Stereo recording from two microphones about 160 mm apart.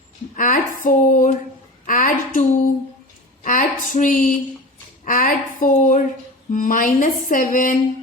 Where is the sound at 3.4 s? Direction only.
55° left (ahead or behind).